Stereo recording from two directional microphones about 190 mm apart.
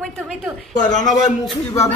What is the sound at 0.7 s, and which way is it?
Speech, 40° left (ahead or behind).